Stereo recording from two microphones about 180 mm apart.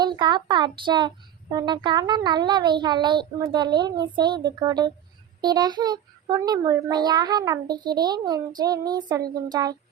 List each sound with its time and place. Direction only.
0.0 s speech: 25° right (ahead or behind)